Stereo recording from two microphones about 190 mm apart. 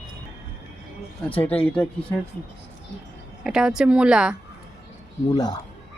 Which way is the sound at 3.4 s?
5° right (ahead or behind).